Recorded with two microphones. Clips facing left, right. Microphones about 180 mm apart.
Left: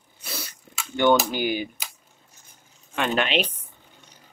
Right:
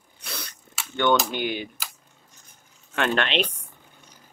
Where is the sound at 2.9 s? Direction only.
5° left (ahead or behind).